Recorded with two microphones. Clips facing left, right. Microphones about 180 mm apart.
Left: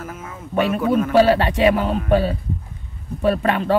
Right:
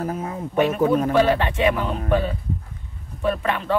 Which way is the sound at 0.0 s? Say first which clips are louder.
Right 7 dB; 35° right (ahead or behind).